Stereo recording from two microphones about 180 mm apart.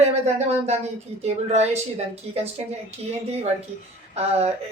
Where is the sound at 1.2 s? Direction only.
35° right (ahead or behind).